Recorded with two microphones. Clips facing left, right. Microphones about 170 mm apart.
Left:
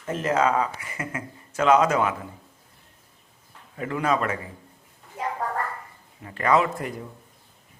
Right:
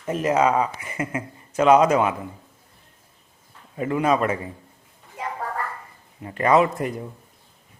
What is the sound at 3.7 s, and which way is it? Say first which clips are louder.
Speech: right 4 dB; 20° right (ahead or behind).